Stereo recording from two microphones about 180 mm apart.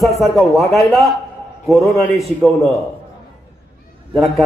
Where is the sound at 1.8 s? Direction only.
15° left (ahead or behind).